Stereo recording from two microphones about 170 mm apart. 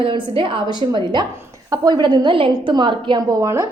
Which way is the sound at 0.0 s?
30° right (ahead or behind).